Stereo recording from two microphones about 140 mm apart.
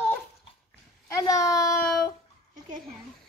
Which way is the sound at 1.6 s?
25° left (ahead or behind).